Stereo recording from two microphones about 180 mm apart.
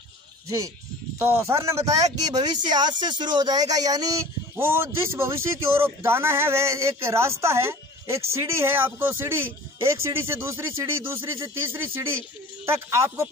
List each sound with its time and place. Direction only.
1.2 s speech: 15° right (ahead or behind)